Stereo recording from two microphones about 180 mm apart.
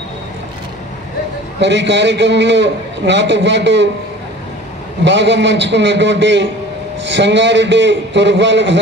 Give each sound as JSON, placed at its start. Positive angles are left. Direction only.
{"t": 1.6, "sound": "a man's voice", "side_deg": -75}
{"t": 5.0, "sound": "a man's voice", "side_deg": -80}